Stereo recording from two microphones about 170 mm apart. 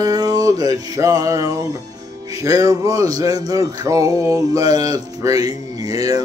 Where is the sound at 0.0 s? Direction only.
20° right (ahead or behind).